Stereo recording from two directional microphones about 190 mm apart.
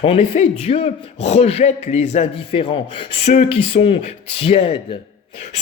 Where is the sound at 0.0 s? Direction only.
30° left (ahead or behind).